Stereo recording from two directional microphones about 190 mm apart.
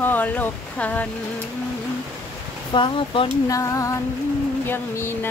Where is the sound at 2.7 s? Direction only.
25° left (ahead or behind).